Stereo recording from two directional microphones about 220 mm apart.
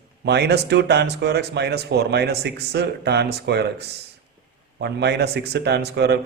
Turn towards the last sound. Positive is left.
turn(degrees=-50)  # may be behind; listen again after turning